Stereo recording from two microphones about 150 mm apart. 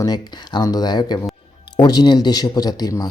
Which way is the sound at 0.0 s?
25° left (ahead or behind).